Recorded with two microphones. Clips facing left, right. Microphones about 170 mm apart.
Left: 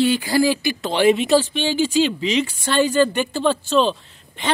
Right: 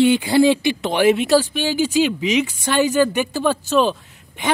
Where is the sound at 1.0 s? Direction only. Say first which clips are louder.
Even; 5° right (ahead or behind).